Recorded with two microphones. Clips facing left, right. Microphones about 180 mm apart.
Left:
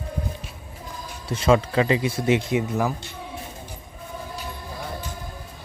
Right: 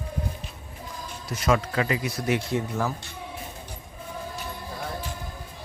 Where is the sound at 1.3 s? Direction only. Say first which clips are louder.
Left 5 dB; 30° left (ahead or behind).